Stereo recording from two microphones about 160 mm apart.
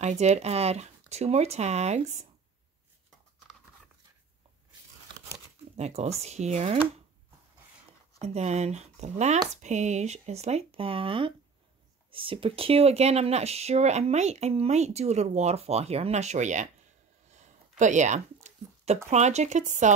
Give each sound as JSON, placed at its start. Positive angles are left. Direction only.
{"t": 0.0, "sound": "speech", "side_deg": -45}
{"t": 5.8, "sound": "speech", "side_deg": -40}
{"t": 8.2, "sound": "speech", "side_deg": -45}
{"t": 17.3, "sound": "a sound", "side_deg": -50}
{"t": 19.0, "sound": "speech", "side_deg": -45}